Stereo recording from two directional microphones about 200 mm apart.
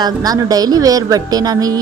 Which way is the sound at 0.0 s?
20° right (ahead or behind).